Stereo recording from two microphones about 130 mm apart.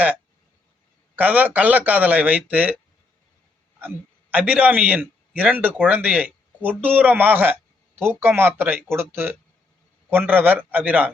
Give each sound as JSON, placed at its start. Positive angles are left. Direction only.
{"t": 1.1, "sound": "speech", "side_deg": -10}
{"t": 3.8, "sound": "a man's voice", "side_deg": -15}